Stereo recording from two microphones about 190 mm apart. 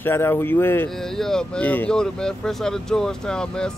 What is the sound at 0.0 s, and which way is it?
Speech, 10° left (ahead or behind).